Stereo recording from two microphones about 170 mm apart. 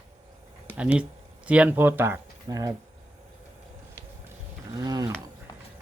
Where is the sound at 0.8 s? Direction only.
5° right (ahead or behind).